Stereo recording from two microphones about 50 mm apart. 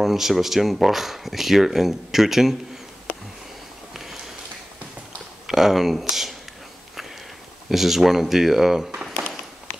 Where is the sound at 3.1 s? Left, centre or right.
Left.